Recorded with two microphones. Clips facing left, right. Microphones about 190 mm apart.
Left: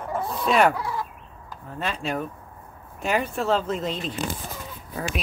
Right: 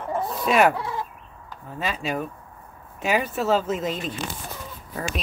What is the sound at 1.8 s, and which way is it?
Speech, 5° right (ahead or behind).